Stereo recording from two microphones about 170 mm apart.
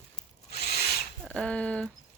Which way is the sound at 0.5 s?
65° left (ahead or behind).